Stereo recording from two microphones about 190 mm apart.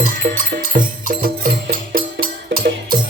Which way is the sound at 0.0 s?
45° right (ahead or behind).